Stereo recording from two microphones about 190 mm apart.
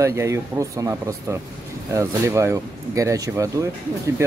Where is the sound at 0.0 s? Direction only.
15° right (ahead or behind).